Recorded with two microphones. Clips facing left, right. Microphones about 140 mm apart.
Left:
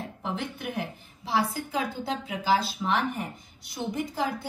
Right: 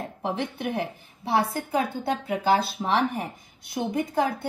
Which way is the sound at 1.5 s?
55° right (ahead or behind).